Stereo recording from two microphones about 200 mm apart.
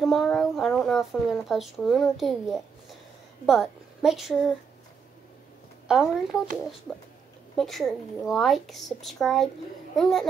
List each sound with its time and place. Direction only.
0.0 s a woman's voice: centre (ahead or behind)
5.9 s speech: 5° right (ahead or behind)